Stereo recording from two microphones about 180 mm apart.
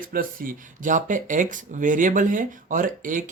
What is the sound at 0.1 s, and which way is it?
Speech, 50° right (ahead or behind).